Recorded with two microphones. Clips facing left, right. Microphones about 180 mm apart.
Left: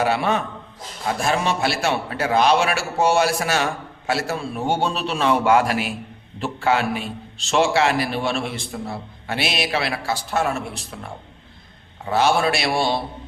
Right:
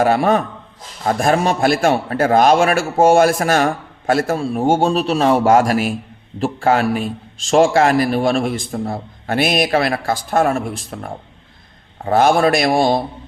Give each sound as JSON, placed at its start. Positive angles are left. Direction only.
{"t": 0.0, "sound": "a man's voice", "side_deg": -45}